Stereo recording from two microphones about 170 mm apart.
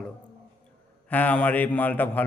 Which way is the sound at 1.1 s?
10° left (ahead or behind).